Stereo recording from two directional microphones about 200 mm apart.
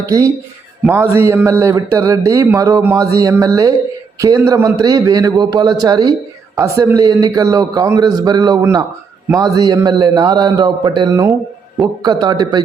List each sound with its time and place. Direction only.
0.0 s a man's voice: 15° right (ahead or behind)